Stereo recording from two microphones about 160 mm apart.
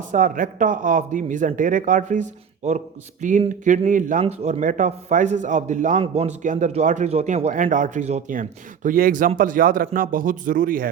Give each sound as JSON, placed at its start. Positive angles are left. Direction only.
{"t": 0.1, "sound": "speech", "side_deg": -55}
{"t": 4.2, "sound": "speech", "side_deg": -40}